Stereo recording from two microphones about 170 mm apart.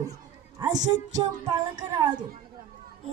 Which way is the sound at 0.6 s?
20° right (ahead or behind).